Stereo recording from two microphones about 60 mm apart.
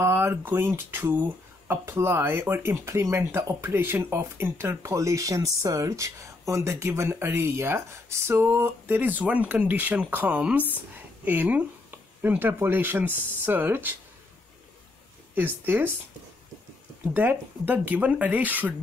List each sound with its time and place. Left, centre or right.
0.0 s speech: right
2.7 s speech: right
4.8 s speech: right
8.8 s speech: right
15.3 s speech: right
17.1 s speech: right